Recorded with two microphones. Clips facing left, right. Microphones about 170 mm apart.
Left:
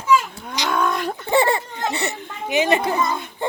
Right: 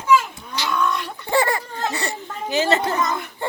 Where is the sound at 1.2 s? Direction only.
25° left (ahead or behind).